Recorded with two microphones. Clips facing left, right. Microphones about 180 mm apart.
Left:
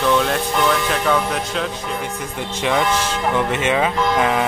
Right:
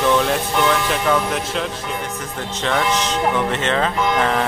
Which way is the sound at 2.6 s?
10° left (ahead or behind).